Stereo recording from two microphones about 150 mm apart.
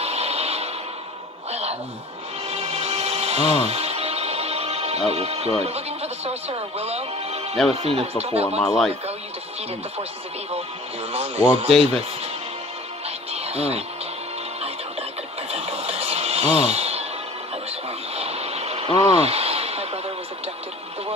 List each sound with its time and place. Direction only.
0.0 s a sound: 45° right (ahead or behind)
2.5 s music: 45° right (ahead or behind)
7.7 s speech: 45° right (ahead or behind)
8.5 s speech: centre (ahead or behind)
11.1 s speech: 45° right (ahead or behind)
13.3 s music: 45° right (ahead or behind)
15.5 s a sound: 45° right (ahead or behind)
18.1 s vehicle: 45° right (ahead or behind)